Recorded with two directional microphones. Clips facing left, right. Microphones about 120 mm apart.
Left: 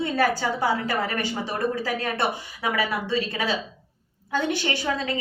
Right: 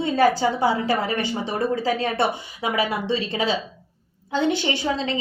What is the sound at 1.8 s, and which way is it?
Speech, 25° right (ahead or behind).